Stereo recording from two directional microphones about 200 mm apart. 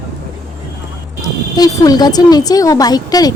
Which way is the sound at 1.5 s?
20° left (ahead or behind).